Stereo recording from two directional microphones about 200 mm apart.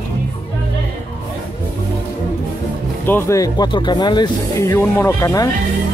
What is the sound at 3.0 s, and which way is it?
Speech, 10° left (ahead or behind).